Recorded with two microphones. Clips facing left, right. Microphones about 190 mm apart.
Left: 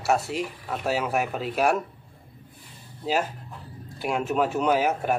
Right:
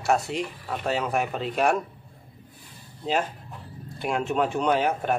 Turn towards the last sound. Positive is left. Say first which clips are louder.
# left 1 dB
turn(degrees=5)  # may be behind; listen again after turning